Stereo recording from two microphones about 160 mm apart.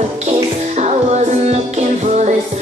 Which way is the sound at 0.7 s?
45° right (ahead or behind).